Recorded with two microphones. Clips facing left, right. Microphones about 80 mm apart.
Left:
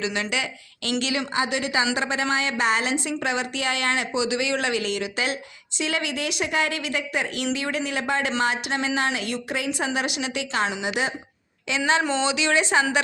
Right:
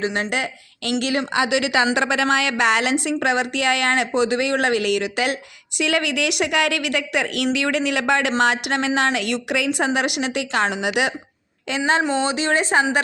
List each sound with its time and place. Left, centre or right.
0.0 s a woman's voice: right
1.3 s a woman's voice: right
2.3 s a woman's voice: right
8.3 s a woman's voice: right
9.6 s a woman's voice: right
12.2 s a woman's voice: right